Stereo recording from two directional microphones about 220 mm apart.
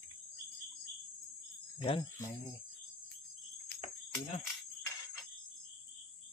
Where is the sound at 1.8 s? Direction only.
20° left (ahead or behind).